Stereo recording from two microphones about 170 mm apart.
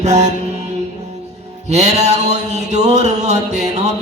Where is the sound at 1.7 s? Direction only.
40° right (ahead or behind).